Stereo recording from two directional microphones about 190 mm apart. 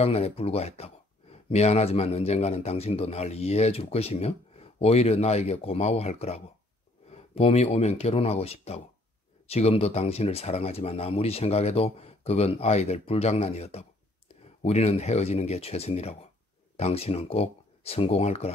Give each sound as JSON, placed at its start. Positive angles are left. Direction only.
{"t": 0.0, "sound": "speech", "side_deg": 30}